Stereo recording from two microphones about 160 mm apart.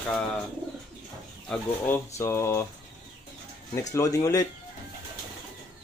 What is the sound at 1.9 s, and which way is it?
Speech, 15° left (ahead or behind).